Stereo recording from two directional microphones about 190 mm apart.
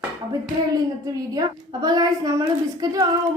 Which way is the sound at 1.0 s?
20° right (ahead or behind).